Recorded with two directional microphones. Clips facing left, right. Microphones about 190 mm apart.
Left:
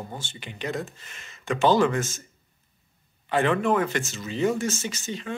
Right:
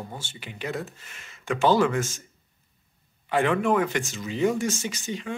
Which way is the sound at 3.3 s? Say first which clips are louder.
Even; 10° right (ahead or behind).